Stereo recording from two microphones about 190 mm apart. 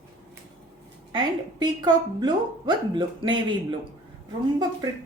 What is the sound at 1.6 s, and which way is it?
Speech, 25° right (ahead or behind).